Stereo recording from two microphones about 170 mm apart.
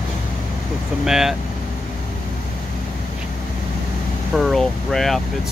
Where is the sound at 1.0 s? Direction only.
5° right (ahead or behind).